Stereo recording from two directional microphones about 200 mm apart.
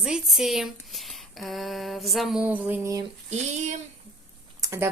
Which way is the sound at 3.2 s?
35° right (ahead or behind).